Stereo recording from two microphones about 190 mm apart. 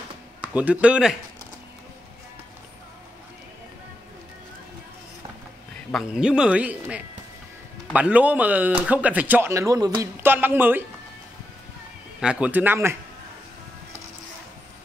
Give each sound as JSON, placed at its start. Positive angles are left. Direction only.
{"t": 0.4, "sound": "speech", "side_deg": -5}
{"t": 5.9, "sound": "a man's voice", "side_deg": 0}
{"t": 12.2, "sound": "speech", "side_deg": -5}